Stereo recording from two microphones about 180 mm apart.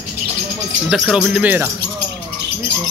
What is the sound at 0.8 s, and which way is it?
Speech, 5° right (ahead or behind).